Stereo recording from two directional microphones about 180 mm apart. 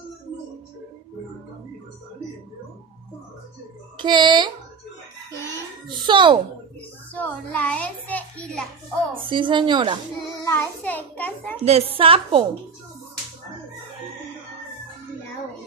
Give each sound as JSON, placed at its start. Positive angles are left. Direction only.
{"t": 3.9, "sound": "a child's voice", "side_deg": -25}
{"t": 5.9, "sound": "a sound", "side_deg": -25}
{"t": 7.2, "sound": "a sound", "side_deg": 10}
{"t": 9.1, "sound": "a woman's voice", "side_deg": -25}
{"t": 10.4, "sound": "a child's voice", "side_deg": 10}
{"t": 11.6, "sound": "a woman's voice", "side_deg": -35}